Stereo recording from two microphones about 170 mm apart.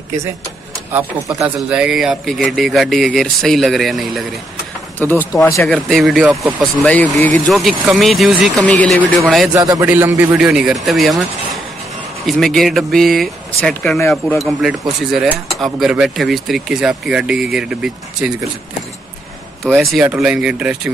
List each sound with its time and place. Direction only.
1.4 s speech: 5° right (ahead or behind)
4.9 s speech: 10° left (ahead or behind)
5.7 s speech: 5° left (ahead or behind)
9.6 s a man's voice: 20° right (ahead or behind); by 11.2 s centre (ahead or behind)
12.3 s speech: centre (ahead or behind)
19.6 s speech: centre (ahead or behind)